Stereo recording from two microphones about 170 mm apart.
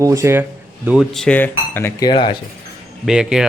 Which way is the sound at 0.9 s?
Centre (ahead or behind).